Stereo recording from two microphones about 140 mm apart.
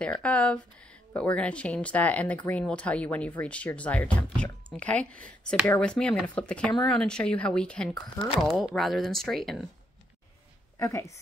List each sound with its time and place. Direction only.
0.0 s speech: 10° left (ahead or behind)
10.8 s speech: 20° left (ahead or behind)